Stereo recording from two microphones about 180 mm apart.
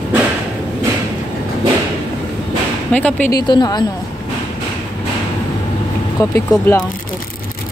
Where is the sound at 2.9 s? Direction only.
10° left (ahead or behind).